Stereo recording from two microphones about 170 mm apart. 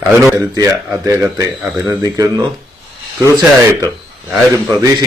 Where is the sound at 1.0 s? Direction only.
20° right (ahead or behind).